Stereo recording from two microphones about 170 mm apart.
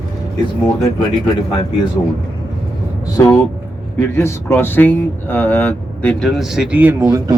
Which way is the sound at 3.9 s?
15° left (ahead or behind).